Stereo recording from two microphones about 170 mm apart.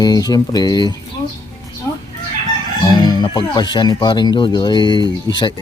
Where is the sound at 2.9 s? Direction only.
25° left (ahead or behind).